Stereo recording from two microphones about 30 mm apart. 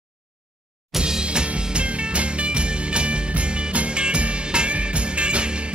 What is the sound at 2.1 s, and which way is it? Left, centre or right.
Music, right.